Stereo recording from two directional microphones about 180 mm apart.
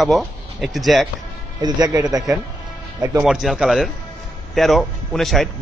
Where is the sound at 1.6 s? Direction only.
20° right (ahead or behind).